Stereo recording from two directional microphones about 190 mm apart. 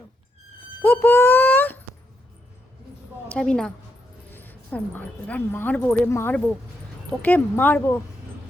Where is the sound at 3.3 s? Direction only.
5° left (ahead or behind).